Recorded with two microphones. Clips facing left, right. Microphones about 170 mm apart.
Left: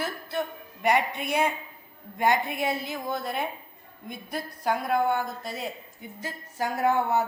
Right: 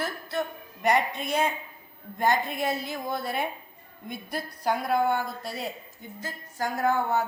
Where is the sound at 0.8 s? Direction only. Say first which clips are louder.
Even; 10° left (ahead or behind).